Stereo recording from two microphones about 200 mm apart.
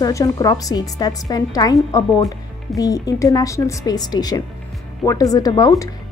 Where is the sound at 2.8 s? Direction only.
15° left (ahead or behind).